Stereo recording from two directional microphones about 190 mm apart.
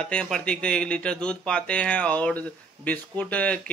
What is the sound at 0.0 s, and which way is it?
Speech, 5° left (ahead or behind).